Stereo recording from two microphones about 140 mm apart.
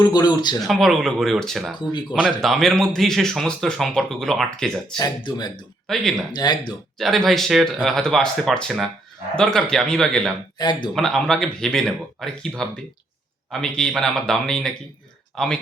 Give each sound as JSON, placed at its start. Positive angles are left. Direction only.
{"t": 0.0, "sound": "speech", "side_deg": 30}
{"t": 0.7, "sound": "speech", "side_deg": 0}
{"t": 4.9, "sound": "speech", "side_deg": 30}
{"t": 5.9, "sound": "speech", "side_deg": 0}
{"t": 6.3, "sound": "speech", "side_deg": 30}
{"t": 7.0, "sound": "speech", "side_deg": 0}